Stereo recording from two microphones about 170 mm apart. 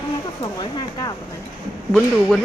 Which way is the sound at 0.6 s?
25° left (ahead or behind).